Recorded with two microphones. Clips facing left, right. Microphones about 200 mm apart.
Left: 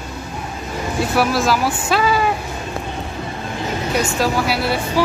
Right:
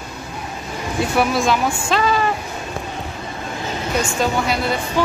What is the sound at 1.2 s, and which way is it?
Speech, centre (ahead or behind).